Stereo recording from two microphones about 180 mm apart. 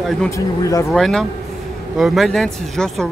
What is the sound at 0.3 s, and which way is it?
Speech, 20° left (ahead or behind).